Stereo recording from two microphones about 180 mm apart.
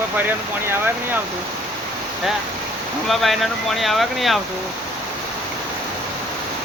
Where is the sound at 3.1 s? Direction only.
Centre (ahead or behind).